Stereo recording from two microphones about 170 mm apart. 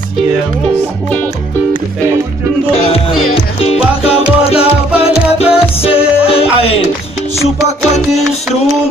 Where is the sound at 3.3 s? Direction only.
35° left (ahead or behind).